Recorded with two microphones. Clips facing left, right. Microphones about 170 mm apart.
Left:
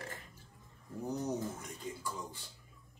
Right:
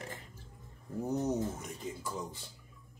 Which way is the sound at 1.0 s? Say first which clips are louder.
Right 4 dB; 25° right (ahead or behind).